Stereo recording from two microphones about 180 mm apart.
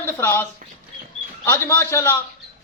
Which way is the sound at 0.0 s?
10° left (ahead or behind).